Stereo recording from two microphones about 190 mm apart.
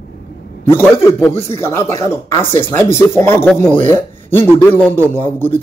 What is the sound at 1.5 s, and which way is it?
A man's voice, 15° left (ahead or behind).